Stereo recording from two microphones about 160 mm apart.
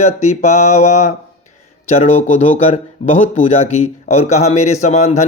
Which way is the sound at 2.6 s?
40° left (ahead or behind).